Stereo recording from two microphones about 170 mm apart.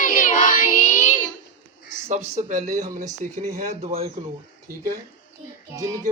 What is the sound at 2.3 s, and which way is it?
Speech, 45° right (ahead or behind).